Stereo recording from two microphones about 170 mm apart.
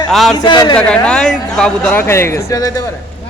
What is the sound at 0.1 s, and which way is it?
Speech, centre (ahead or behind).